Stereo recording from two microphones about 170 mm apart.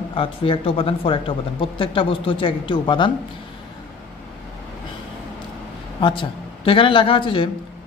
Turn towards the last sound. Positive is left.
turn(degrees=30)  # may be behind; listen again after turning